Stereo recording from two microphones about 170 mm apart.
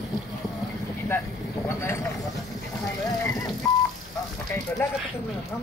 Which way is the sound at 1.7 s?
15° left (ahead or behind).